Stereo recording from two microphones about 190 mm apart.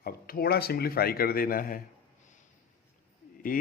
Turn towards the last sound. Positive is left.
turn(degrees=45)  # may be behind; listen again after turning